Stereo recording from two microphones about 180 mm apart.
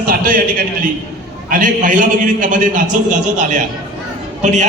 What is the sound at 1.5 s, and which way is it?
A man's voice, 50° right (ahead or behind).